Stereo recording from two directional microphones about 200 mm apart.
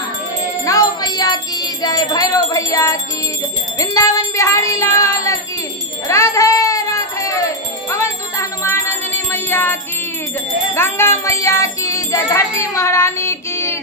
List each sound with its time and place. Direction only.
0.7 s music: 20° left (ahead or behind)